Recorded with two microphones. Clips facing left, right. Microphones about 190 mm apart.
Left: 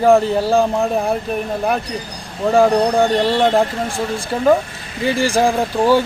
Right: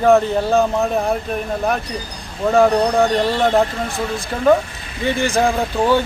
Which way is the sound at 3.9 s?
30° left (ahead or behind).